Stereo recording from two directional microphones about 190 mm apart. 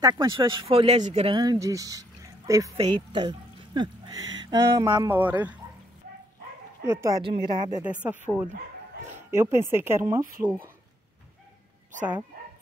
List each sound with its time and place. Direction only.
0.0 s speech: 20° right (ahead or behind); by 1.3 s 35° right (ahead or behind)
1.3 s speech: 20° right (ahead or behind)
6.8 s speech: 15° right (ahead or behind)
7.8 s speech: 10° right (ahead or behind)